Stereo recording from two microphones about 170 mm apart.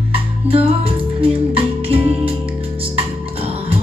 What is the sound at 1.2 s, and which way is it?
Music, 30° right (ahead or behind).